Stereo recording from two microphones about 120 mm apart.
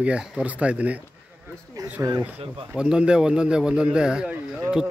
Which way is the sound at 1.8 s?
30° right (ahead or behind).